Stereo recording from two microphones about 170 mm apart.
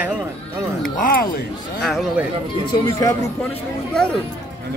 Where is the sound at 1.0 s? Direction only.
60° left (ahead or behind).